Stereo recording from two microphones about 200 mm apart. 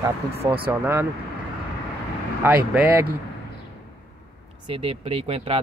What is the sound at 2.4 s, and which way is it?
Speech, 10° right (ahead or behind).